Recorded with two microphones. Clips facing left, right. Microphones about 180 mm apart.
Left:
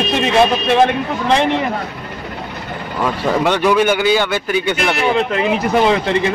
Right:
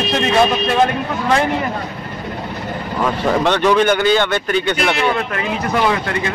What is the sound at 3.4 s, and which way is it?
Speech, 10° left (ahead or behind).